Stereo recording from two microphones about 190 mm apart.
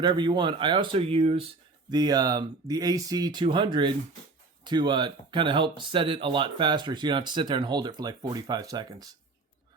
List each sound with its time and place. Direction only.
0.0 s speech: 25° right (ahead or behind)
1.9 s speech: 20° right (ahead or behind)